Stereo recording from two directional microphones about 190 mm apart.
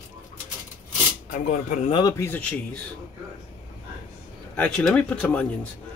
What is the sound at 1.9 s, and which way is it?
Speech, 15° left (ahead or behind).